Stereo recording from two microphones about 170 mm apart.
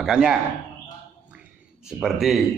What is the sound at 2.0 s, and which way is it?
Speech, centre (ahead or behind).